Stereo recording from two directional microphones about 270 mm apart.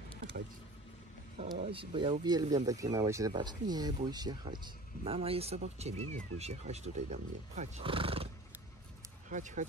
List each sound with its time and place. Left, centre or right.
1.4 s speech: right
9.3 s speech: right